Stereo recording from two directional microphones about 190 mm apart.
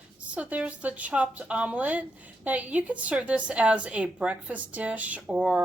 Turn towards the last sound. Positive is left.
turn(degrees=-5)  # may be behind; listen again after turning